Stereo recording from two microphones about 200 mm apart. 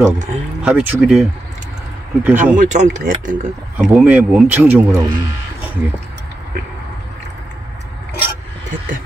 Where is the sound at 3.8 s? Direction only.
5° right (ahead or behind).